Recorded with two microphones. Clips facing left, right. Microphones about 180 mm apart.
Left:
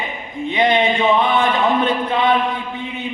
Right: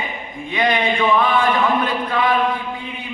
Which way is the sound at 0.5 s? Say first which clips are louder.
Left 2 dB; 25° left (ahead or behind).